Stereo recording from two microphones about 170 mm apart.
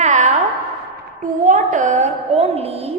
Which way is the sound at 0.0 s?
45° right (ahead or behind).